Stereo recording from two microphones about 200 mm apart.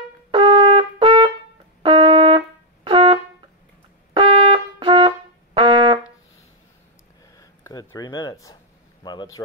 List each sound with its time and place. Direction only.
0.3 s trumpet: 25° right (ahead or behind)
1.8 s brass instrument: 25° right (ahead or behind)
4.1 s trumpet: 25° right (ahead or behind)
7.3 s speech: 15° left (ahead or behind)